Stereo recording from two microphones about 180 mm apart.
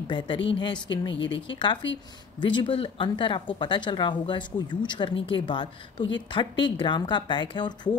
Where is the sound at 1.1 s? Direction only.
85° left.